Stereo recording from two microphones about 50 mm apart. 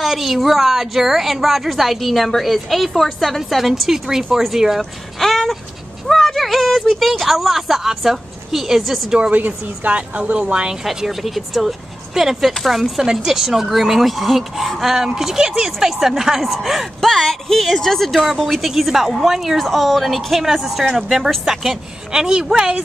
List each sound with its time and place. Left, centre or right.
0.0 s a woman's voice: centre
5.2 s a sound: centre
6.0 s speech: centre
9.3 s speech: right
10.8 s a woman's voice: centre